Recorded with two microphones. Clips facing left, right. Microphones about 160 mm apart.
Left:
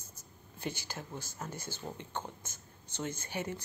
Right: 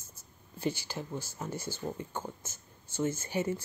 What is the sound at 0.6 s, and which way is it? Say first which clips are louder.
Speech: right 6 dB; 50° left (ahead or behind).